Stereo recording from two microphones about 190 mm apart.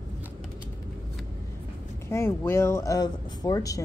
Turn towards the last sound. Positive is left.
turn(degrees=20)  # may be behind; listen again after turning